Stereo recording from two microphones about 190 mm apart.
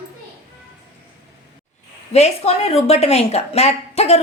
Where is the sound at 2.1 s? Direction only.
35° left (ahead or behind).